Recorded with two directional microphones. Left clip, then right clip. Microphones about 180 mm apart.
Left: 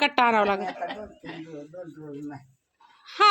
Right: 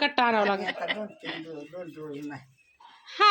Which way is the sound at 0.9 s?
40° left (ahead or behind).